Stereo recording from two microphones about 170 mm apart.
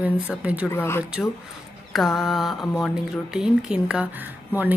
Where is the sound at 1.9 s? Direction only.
Centre (ahead or behind).